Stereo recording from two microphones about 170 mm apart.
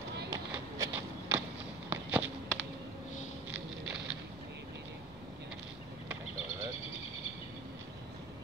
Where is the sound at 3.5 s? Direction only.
5° right (ahead or behind).